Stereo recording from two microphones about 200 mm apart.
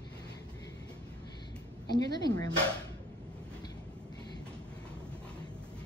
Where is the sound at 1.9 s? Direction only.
20° left (ahead or behind).